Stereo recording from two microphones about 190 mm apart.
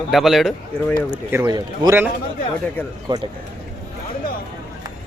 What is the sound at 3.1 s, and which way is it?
Speech, 25° right (ahead or behind).